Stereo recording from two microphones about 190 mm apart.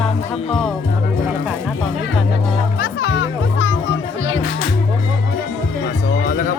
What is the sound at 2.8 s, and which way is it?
Music, 60° left (ahead or behind).